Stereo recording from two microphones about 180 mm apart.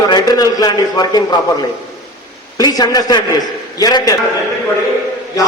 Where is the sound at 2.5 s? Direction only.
20° left (ahead or behind).